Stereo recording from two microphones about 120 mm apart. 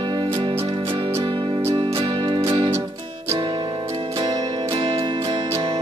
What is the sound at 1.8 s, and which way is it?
Music, 40° right (ahead or behind).